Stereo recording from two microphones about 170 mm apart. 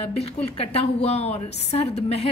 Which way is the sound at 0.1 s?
35° left (ahead or behind).